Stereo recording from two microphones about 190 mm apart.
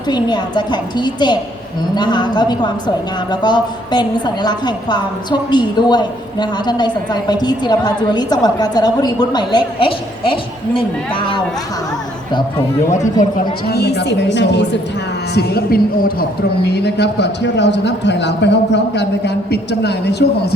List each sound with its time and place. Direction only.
0.1 s a woman's voice: 20° left (ahead or behind)
12.9 s a man's voice: 40° left (ahead or behind); by 14.8 s 65° left (ahead or behind)
15.4 s a woman's voice: 55° left (ahead or behind)
16.6 s a man's voice: 60° left (ahead or behind)